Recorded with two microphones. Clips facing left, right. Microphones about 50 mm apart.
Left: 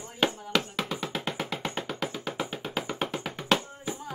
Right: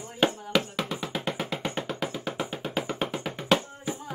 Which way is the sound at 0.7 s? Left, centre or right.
Centre.